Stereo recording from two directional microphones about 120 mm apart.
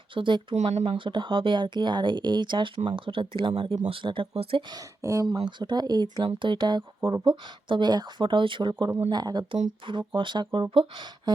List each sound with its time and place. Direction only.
0.1 s speech: 45° right (ahead or behind)
0.5 s speech: 65° right (ahead or behind)
0.9 s speech: 45° right (ahead or behind)
4.7 s speech: 30° right (ahead or behind)